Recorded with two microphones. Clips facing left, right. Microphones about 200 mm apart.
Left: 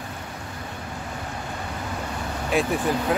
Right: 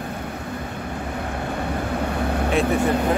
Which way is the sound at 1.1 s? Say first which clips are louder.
Right 8 dB; 60° right (ahead or behind).